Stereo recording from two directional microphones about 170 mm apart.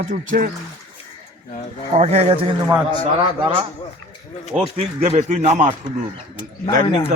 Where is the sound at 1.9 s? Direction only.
35° right (ahead or behind).